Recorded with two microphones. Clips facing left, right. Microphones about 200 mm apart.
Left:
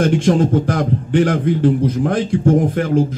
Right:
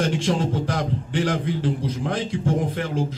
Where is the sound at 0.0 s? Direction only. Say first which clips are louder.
Left 8 dB; 55° left (ahead or behind).